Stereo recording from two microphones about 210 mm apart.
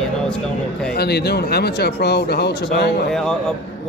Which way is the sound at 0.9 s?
50° left (ahead or behind).